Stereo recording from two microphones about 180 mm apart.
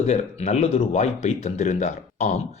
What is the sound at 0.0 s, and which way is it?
Speech, 35° left (ahead or behind).